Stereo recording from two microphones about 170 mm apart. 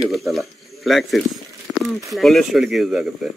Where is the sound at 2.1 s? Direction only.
Centre (ahead or behind).